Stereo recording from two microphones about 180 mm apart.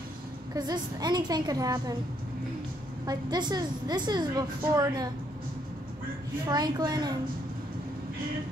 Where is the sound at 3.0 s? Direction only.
25° right (ahead or behind).